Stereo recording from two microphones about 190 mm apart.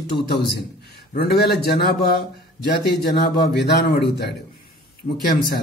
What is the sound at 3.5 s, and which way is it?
Speech, 60° left (ahead or behind).